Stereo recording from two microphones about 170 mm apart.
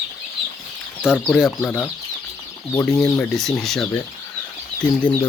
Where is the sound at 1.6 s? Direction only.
10° left (ahead or behind).